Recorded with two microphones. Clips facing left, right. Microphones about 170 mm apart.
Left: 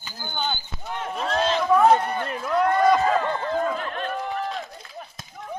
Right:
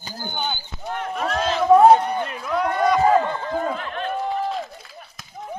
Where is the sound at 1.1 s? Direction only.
25° left (ahead or behind).